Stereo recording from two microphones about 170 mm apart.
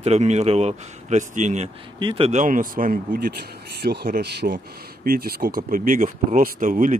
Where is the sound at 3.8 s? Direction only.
70° right (ahead or behind).